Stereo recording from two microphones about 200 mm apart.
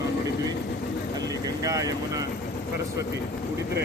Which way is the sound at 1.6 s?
15° right (ahead or behind).